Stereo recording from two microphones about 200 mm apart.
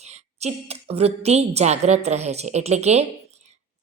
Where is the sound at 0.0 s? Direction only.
35° right (ahead or behind).